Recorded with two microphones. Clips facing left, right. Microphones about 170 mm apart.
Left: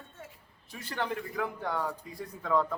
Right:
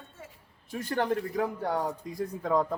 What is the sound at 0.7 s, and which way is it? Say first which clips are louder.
Speech: right 6 dB; 45° right (ahead or behind).